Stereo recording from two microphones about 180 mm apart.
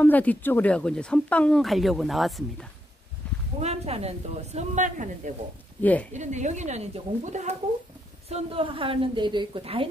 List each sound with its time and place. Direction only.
0.0 s speech: 10° left (ahead or behind)
3.5 s speech: 35° right (ahead or behind)
5.8 s a woman's voice: 10° left (ahead or behind)
6.1 s a woman's voice: 40° right (ahead or behind)